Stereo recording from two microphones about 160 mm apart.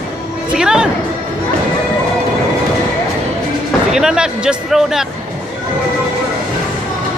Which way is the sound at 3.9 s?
5° right (ahead or behind).